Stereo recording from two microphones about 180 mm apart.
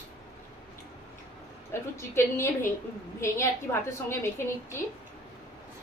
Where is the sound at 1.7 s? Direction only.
15° left (ahead or behind).